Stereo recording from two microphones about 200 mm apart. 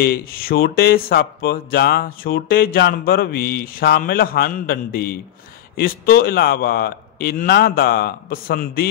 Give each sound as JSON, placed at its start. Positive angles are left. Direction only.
{"t": 0.0, "sound": "speech", "side_deg": 50}